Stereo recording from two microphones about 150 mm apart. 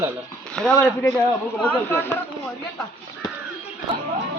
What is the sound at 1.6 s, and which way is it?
Speech, 15° left (ahead or behind).